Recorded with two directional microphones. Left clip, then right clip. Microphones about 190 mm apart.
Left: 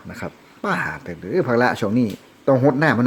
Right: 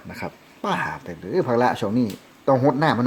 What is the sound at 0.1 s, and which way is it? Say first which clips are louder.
Speech: left 1 dB; 10° left (ahead or behind).